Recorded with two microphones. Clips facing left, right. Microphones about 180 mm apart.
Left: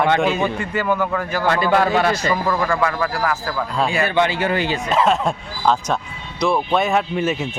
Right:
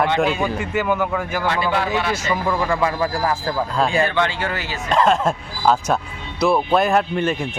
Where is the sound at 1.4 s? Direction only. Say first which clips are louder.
Left 6 dB; 45° left (ahead or behind).